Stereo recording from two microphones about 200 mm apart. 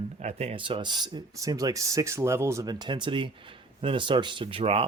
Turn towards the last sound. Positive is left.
turn(degrees=-30)  # may be behind; listen again after turning